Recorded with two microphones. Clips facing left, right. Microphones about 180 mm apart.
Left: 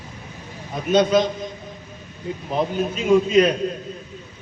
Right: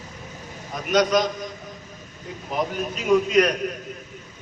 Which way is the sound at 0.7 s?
25° left (ahead or behind).